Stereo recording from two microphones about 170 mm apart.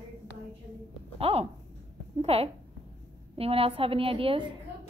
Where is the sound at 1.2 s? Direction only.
35° right (ahead or behind).